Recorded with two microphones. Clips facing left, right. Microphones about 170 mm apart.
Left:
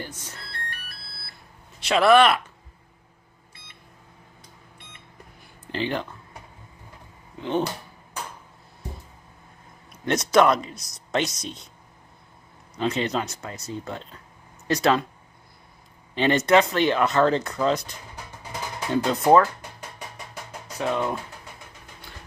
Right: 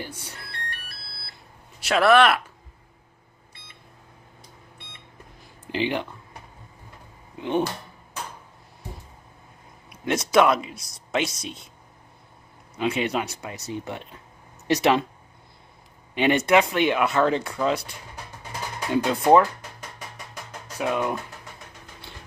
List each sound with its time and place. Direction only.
0.0 s vehicle: 10° right (ahead or behind)
1.8 s speech: 5° right (ahead or behind)
5.7 s speech: 15° right (ahead or behind)
7.3 s speech: 15° right (ahead or behind)
9.8 s speech: 5° right (ahead or behind)
12.7 s speech: 10° right (ahead or behind)
16.2 s speech: 15° right (ahead or behind)
20.7 s speech: 10° right (ahead or behind)